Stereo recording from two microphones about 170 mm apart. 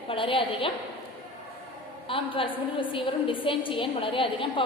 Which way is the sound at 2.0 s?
30° left (ahead or behind).